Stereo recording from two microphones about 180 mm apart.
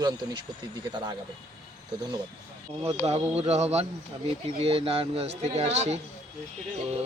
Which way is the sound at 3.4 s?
35° right (ahead or behind).